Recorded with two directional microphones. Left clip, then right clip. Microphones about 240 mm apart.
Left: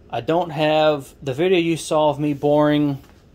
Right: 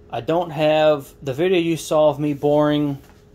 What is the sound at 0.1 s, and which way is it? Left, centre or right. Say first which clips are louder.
Speech: left 1 dB; centre.